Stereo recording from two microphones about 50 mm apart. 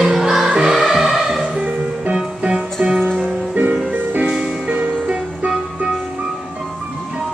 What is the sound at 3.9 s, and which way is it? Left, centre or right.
Music, right.